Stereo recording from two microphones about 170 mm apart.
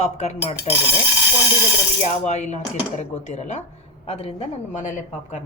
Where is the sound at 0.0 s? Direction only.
40° left (ahead or behind).